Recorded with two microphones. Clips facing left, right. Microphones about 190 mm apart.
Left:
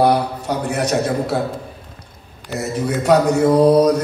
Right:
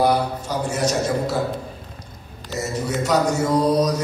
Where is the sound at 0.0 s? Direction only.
60° left (ahead or behind).